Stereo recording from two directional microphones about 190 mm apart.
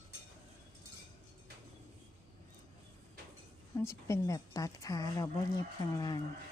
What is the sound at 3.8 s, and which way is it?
Speech, 15° left (ahead or behind).